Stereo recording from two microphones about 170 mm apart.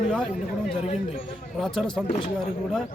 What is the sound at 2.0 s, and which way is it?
Speech, 35° left (ahead or behind).